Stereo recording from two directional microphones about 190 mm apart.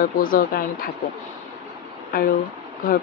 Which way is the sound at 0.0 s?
50° left (ahead or behind).